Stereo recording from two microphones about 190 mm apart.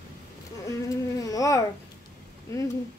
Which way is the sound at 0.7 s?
20° left (ahead or behind).